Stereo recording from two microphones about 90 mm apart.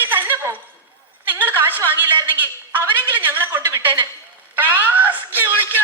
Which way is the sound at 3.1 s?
20° right (ahead or behind).